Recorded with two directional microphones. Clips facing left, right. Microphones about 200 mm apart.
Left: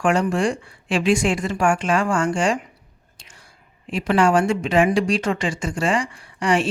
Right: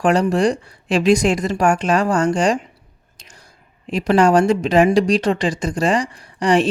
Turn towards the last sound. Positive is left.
turn(degrees=-35)  # may be behind; listen again after turning